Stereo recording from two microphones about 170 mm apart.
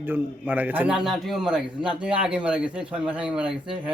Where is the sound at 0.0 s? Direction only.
10° right (ahead or behind).